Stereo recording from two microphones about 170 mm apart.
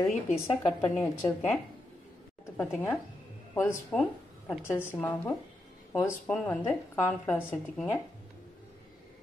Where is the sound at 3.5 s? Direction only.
15° left (ahead or behind).